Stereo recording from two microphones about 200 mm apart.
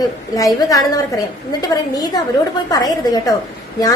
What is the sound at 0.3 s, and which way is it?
A woman's voice, 15° left (ahead or behind).